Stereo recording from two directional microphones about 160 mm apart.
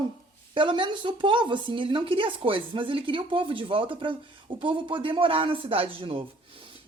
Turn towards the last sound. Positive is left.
turn(degrees=-35)  # may be behind; listen again after turning